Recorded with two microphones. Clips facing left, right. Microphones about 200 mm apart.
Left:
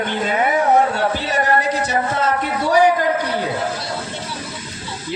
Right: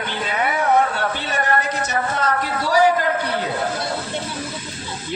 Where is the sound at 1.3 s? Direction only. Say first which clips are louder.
Left 2 dB; 35° left (ahead or behind).